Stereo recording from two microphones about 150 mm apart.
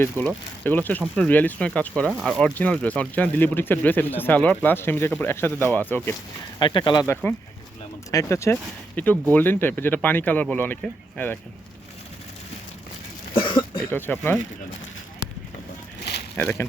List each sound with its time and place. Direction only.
0.0 s speech: 10° left (ahead or behind)
6.6 s speech: 30° left (ahead or behind)
7.1 s speech: 10° left (ahead or behind)
13.3 s cough: 35° left (ahead or behind)
13.9 s speech: 15° left (ahead or behind)
16.3 s speech: 10° left (ahead or behind)